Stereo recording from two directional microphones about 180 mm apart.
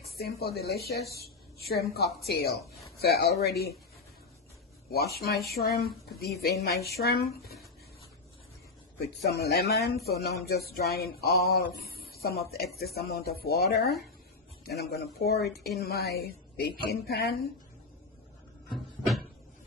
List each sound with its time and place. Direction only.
0.0 s speech: 60° left (ahead or behind)
4.9 s speech: 60° left (ahead or behind)
9.2 s speech: 60° left (ahead or behind)
18.7 s cupboard open or close: centre (ahead or behind)